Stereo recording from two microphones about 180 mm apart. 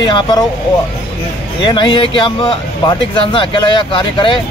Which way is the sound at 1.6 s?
25° left (ahead or behind).